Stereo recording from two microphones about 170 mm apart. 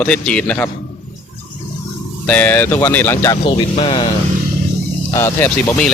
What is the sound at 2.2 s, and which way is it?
Speech, 10° left (ahead or behind).